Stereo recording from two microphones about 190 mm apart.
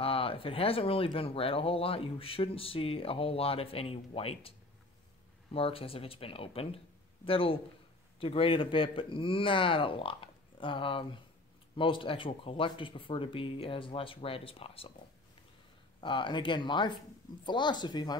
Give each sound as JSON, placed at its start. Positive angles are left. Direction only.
{"t": 0.0, "sound": "speech", "side_deg": 30}
{"t": 16.0, "sound": "speech", "side_deg": 25}